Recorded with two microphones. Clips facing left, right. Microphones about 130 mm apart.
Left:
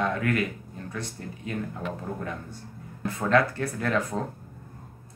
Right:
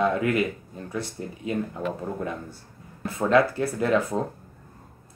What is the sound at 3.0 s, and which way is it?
Speech, 25° right (ahead or behind).